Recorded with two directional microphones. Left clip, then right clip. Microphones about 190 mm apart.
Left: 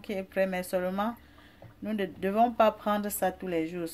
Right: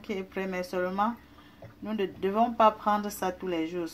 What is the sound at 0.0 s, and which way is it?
Speech, 35° left (ahead or behind).